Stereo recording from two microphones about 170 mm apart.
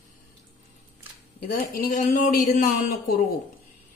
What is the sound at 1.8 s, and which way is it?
A woman's voice, 50° left (ahead or behind).